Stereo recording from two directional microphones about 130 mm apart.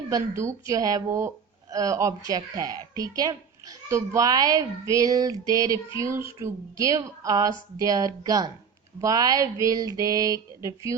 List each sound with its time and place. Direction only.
0.1 s speech: 20° right (ahead or behind)